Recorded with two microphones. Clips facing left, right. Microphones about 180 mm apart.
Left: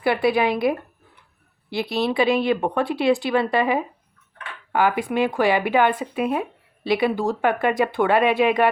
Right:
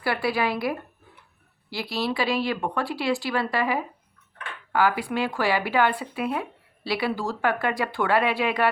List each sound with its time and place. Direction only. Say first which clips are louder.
0.0 s speech: left 6 dB; 20° left (ahead or behind)